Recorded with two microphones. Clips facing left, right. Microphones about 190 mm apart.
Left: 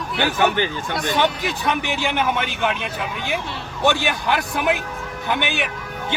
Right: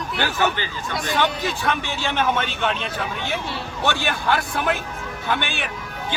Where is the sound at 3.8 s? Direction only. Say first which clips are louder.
Left 3 dB; 15° left (ahead or behind).